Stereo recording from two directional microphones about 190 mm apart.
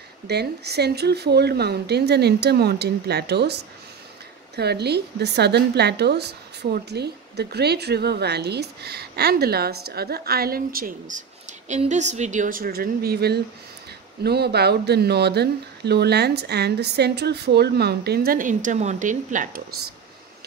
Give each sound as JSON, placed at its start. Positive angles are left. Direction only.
{"t": 0.3, "sound": "a woman's voice", "side_deg": -60}